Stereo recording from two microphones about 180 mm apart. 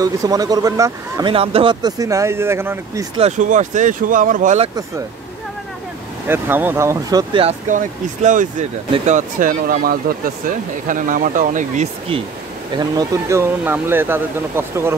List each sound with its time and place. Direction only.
0.0 s speech: 20° right (ahead or behind)
1.3 s speech: 30° right (ahead or behind); by 3.1 s 15° right (ahead or behind)
3.2 s speech: 40° right (ahead or behind)
6.2 s speech: 10° right (ahead or behind)
7.4 s speech: 40° right (ahead or behind)
12.7 s speech: 20° right (ahead or behind)